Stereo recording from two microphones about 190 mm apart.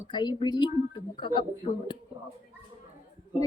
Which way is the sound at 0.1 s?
25° left (ahead or behind).